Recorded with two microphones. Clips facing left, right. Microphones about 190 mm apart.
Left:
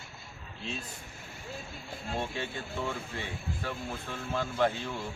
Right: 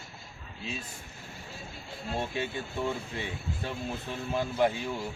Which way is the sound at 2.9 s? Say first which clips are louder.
Right 3 dB; 20° right (ahead or behind).